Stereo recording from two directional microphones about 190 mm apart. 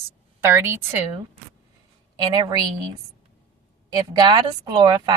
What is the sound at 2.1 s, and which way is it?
Speech, 25° right (ahead or behind).